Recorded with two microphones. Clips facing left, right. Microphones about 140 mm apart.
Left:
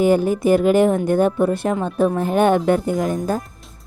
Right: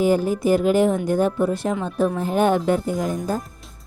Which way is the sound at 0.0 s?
60° left (ahead or behind).